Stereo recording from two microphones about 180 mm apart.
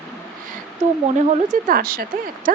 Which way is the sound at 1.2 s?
45° right (ahead or behind).